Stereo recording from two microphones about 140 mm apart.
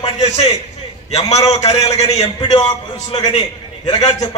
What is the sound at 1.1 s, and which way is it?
A man's voice, 50° left (ahead or behind).